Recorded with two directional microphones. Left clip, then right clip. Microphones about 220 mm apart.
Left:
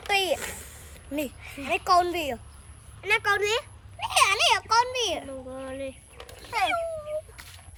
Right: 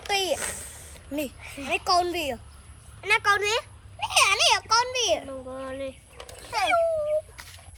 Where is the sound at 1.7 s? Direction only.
20° left (ahead or behind).